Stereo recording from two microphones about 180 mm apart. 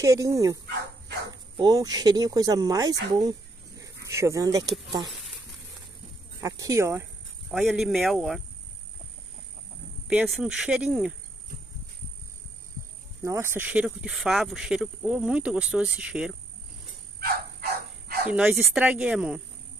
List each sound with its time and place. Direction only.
0.0 s speech: 20° right (ahead or behind)
1.6 s speech: 20° right (ahead or behind)
6.4 s speech: 20° right (ahead or behind)
7.5 s speech: centre (ahead or behind)
10.0 s speech: 5° right (ahead or behind)
13.2 s speech: 15° right (ahead or behind)
17.2 s dog: 60° right (ahead or behind)
18.3 s speech: 5° right (ahead or behind)